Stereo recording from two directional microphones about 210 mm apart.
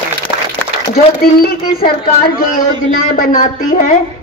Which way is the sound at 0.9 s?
45° left (ahead or behind).